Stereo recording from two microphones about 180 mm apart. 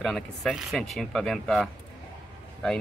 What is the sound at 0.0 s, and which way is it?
Speech, 5° left (ahead or behind).